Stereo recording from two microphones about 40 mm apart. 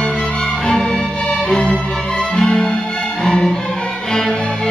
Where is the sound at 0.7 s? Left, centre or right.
Centre.